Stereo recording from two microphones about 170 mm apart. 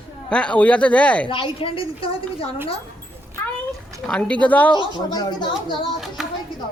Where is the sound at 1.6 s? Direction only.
30° left (ahead or behind).